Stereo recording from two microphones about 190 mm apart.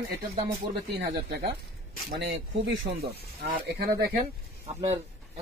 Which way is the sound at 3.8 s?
55° right (ahead or behind).